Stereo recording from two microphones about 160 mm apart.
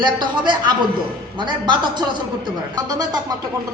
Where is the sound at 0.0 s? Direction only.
30° right (ahead or behind).